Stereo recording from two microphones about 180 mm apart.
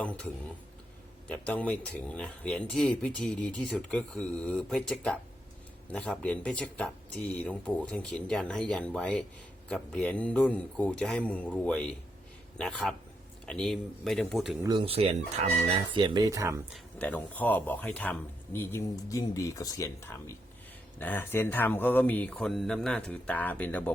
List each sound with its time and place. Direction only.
0.0 s speech: 5° left (ahead or behind)
14.6 s speech: 25° right (ahead or behind)
16.7 s speech: 10° left (ahead or behind)